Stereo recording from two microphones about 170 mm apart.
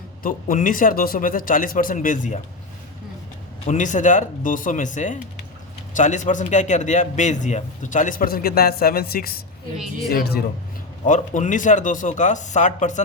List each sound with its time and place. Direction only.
0.2 s a man's voice: 55° left (ahead or behind)
3.7 s a man's voice: 50° left (ahead or behind)
9.7 s speech: 5° right (ahead or behind)
10.1 s a man's voice: 65° left (ahead or behind)
11.0 s a man's voice: 50° left (ahead or behind)